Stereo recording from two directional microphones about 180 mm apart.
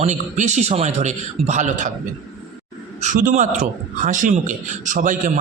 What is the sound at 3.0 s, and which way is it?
Speech, 45° right (ahead or behind).